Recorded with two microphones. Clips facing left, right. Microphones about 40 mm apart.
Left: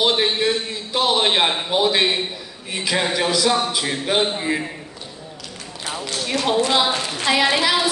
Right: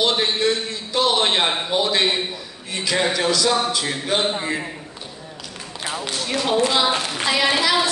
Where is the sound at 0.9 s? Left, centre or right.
Centre.